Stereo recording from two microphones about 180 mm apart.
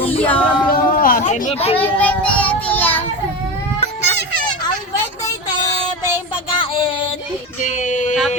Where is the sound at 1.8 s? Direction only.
5° left (ahead or behind).